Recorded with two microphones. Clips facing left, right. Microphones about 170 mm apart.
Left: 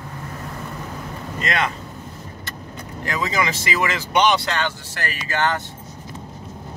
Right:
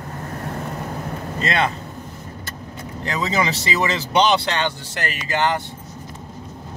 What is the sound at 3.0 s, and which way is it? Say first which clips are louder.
Speech: right 1 dB; 30° right (ahead or behind).